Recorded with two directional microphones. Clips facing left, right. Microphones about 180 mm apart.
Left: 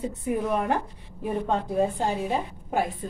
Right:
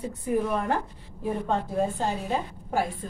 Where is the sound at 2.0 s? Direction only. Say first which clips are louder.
Left 2 dB; 15° left (ahead or behind).